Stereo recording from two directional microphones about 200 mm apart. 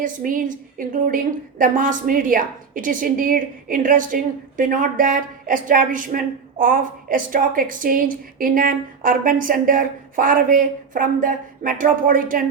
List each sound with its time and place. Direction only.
0.0 s a woman's voice: 40° right (ahead or behind)